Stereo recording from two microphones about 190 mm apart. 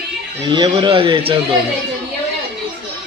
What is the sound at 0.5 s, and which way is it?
Speech, 25° right (ahead or behind).